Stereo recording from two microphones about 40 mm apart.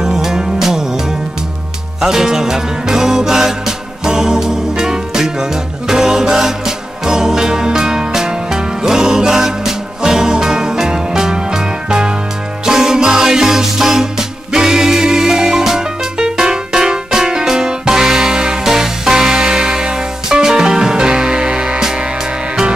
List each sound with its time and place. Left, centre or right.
0.0 s music: centre
2.0 s music: centre